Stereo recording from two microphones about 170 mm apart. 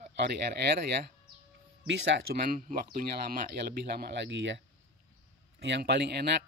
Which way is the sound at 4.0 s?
85° right.